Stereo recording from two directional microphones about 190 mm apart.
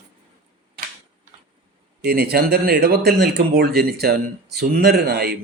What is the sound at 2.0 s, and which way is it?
A man's voice, 55° right (ahead or behind).